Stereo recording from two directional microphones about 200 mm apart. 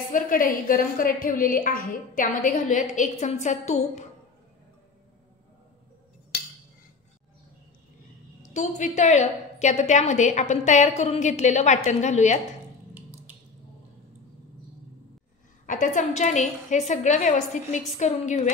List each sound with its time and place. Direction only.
0.1 s a woman's voice: 45° left (ahead or behind)
8.5 s a woman's voice: 35° left (ahead or behind)
15.6 s a woman's voice: 40° left (ahead or behind)